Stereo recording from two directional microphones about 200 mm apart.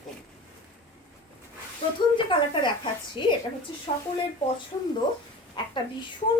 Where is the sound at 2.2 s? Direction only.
25° left (ahead or behind).